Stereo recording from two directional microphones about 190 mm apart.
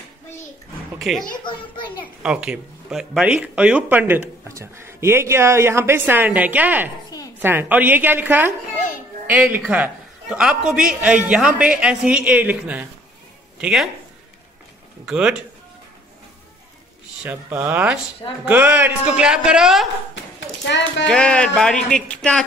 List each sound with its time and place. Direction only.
0.9 s a man's voice: centre (ahead or behind)
2.2 s speech: 5° right (ahead or behind)
9.6 s a man's voice: 5° right (ahead or behind)
15.0 s a man's voice: 5° right (ahead or behind)
17.2 s a man's voice: 5° right (ahead or behind)
20.3 s a sound: 70° left (ahead or behind)
21.1 s a man's voice: 5° left (ahead or behind)